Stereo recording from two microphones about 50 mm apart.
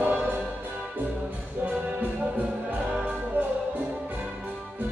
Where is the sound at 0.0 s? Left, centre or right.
Right.